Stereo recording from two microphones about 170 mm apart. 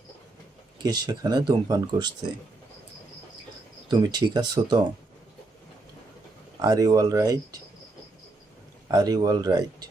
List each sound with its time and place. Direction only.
0.8 s speech: 25° right (ahead or behind)
3.8 s speech: 25° right (ahead or behind)
6.6 s speech: 20° right (ahead or behind)
8.9 s speech: 20° right (ahead or behind)